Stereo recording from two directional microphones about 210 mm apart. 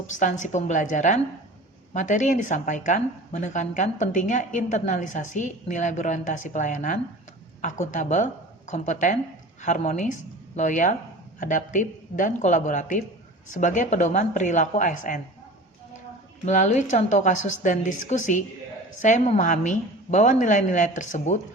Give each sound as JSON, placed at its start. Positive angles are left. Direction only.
{"t": 0.2, "sound": "a woman's voice", "side_deg": 35}
{"t": 16.5, "sound": "a woman's voice", "side_deg": 35}